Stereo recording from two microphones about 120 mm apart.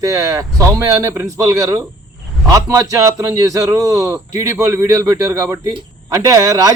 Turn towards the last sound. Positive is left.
turn(degrees=-30)  # may be behind; listen again after turning